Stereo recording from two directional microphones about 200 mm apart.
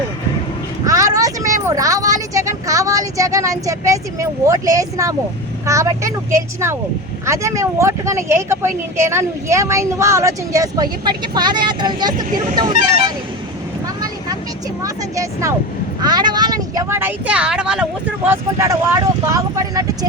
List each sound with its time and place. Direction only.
0.9 s speech: 15° right (ahead or behind)
13.8 s vehicle: 20° right (ahead or behind)
14.8 s speech: 15° right (ahead or behind)
18.3 s speech: 15° right (ahead or behind)